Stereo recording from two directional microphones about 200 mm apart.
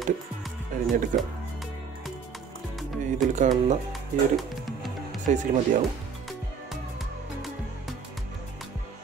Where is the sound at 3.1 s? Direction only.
35° right (ahead or behind).